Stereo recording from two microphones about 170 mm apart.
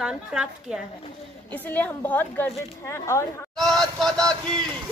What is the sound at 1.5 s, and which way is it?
A woman's voice, 10° left (ahead or behind).